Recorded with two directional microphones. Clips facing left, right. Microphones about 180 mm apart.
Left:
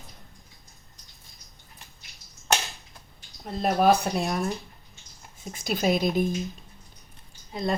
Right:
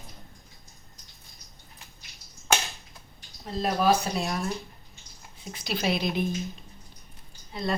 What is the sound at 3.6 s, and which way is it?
Speech, 55° left (ahead or behind).